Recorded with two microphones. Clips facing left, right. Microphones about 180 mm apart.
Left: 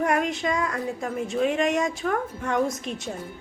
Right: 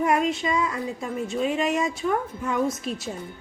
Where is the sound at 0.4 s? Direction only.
50° left (ahead or behind).